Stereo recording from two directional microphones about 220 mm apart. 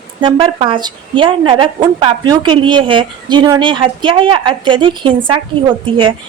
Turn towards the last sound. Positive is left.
turn(degrees=-20)  # may be behind; listen again after turning